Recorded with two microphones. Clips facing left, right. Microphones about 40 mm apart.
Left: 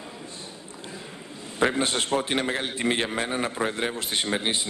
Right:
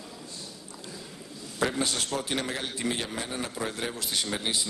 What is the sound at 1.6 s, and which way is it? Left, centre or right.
A man's voice, left.